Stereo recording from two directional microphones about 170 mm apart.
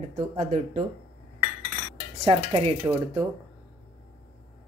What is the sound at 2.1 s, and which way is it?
Dishes, 35° right (ahead or behind).